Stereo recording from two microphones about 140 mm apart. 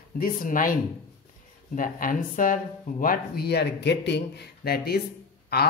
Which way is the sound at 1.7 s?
75° left (ahead or behind).